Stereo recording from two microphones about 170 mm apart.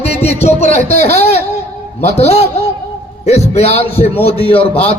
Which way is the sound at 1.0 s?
40° left (ahead or behind).